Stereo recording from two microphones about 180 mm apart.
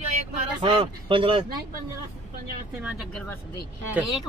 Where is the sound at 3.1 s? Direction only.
5° left (ahead or behind).